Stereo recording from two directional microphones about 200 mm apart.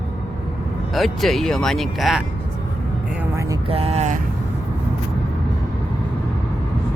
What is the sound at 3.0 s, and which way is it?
Vehicle, 10° right (ahead or behind).